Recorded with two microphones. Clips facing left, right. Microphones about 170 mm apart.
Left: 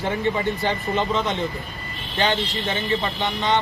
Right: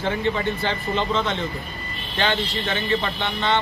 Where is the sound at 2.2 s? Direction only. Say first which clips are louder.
Left 1 dB; 20° left (ahead or behind).